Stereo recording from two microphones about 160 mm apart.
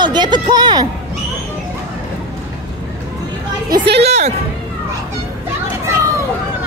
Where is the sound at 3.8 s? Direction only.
90° right.